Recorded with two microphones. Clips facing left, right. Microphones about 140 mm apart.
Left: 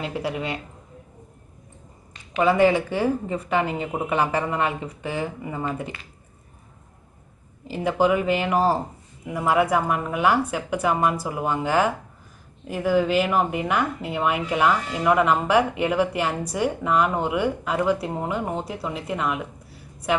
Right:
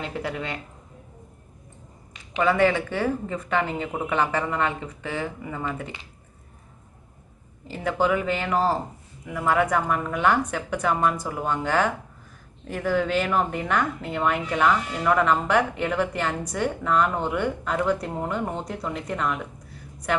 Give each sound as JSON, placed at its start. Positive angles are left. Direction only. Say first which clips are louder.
{"t": 0.0, "sound": "speech", "louder": "left 3 dB", "side_deg": 10}
{"t": 2.3, "sound": "speech", "louder": "left 3 dB", "side_deg": 15}
{"t": 7.6, "sound": "speech", "louder": "left 3 dB", "side_deg": 10}